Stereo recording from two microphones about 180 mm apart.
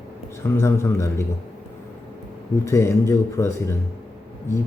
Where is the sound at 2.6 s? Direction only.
15° left (ahead or behind).